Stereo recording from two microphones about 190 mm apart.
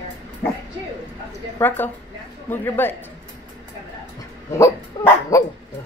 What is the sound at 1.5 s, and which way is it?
A woman's voice, 10° left (ahead or behind).